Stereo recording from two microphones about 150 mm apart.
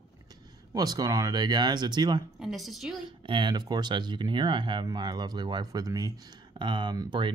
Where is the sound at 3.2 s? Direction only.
30° right (ahead or behind).